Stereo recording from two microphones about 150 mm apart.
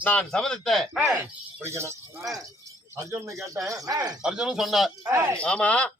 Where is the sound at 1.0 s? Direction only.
15° right (ahead or behind).